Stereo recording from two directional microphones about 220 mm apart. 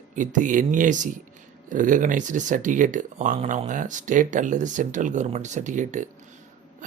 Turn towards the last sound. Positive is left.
turn(degrees=-35)  # may be behind; listen again after turning